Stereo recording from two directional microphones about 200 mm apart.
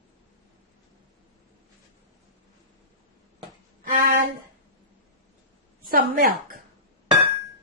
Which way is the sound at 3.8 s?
45° right (ahead or behind).